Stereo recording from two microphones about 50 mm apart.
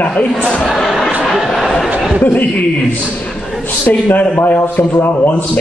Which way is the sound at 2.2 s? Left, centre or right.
Left.